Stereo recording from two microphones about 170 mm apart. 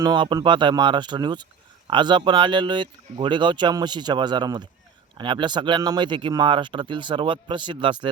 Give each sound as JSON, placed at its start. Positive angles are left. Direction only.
{"t": 0.0, "sound": "speech", "side_deg": -25}